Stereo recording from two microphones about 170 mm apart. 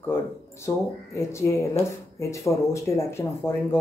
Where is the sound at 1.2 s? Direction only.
15° left (ahead or behind).